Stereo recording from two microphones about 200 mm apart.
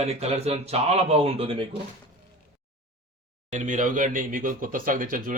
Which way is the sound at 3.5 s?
40° right (ahead or behind).